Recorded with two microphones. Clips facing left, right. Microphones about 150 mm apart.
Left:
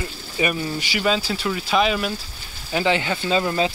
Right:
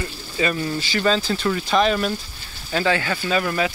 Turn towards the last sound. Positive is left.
turn(degrees=25)  # may be behind; listen again after turning